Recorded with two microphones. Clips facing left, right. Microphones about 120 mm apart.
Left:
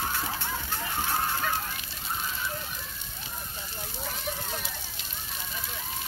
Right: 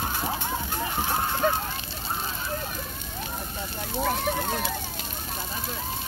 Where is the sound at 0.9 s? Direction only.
20° right (ahead or behind).